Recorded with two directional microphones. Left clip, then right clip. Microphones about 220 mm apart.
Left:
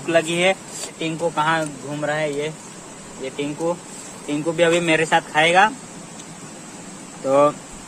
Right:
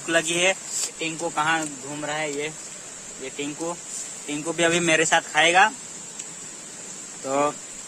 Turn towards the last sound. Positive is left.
turn(degrees=-5)  # may be behind; listen again after turning